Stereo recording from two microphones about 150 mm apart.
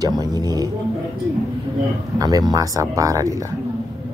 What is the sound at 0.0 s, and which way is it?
Music, 25° right (ahead or behind).